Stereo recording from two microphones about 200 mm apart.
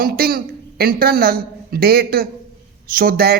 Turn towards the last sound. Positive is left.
turn(degrees=-50)  # may be behind; listen again after turning